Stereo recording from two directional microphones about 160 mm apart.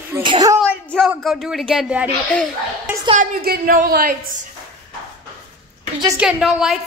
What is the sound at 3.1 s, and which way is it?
A woman's voice, 65° right (ahead or behind).